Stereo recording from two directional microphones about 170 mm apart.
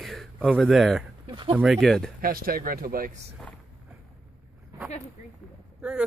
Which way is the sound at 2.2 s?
60° right (ahead or behind).